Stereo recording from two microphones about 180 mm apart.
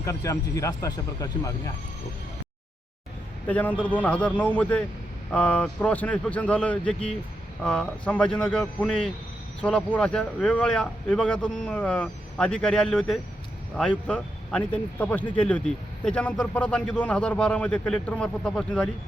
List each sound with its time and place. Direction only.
0.0 s speech: 15° left (ahead or behind)
3.4 s a man's voice: 10° left (ahead or behind)